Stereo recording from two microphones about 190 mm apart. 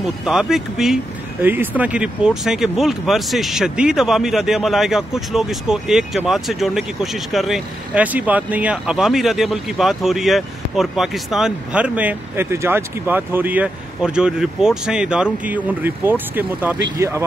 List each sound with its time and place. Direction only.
0.0 s speech: 5° right (ahead or behind)